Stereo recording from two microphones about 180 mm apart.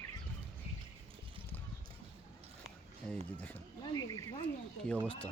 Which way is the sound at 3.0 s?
10° left (ahead or behind).